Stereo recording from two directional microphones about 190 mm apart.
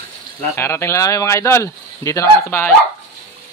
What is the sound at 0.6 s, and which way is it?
Speech, 15° left (ahead or behind).